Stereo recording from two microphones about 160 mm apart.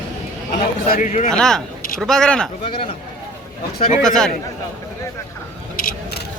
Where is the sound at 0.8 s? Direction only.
55° left (ahead or behind).